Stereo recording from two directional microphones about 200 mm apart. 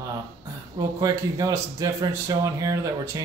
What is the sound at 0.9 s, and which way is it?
Speech, 15° right (ahead or behind).